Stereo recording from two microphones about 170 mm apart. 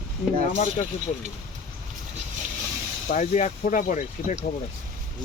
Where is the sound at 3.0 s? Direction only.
45° left (ahead or behind).